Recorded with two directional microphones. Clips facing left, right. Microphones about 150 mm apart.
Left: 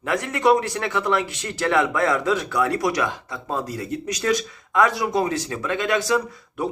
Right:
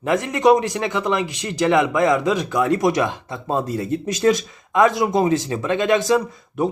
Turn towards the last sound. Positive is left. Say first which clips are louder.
# right 4 dB
turn(degrees=-20)  # may be behind; listen again after turning